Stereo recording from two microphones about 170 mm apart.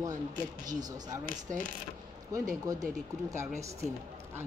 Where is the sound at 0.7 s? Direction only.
20° right (ahead or behind).